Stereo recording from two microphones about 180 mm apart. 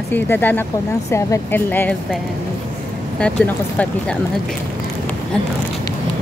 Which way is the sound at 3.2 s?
5° left (ahead or behind).